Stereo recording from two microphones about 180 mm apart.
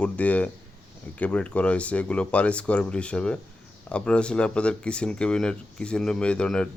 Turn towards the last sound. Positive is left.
turn(degrees=5)  # may be behind; listen again after turning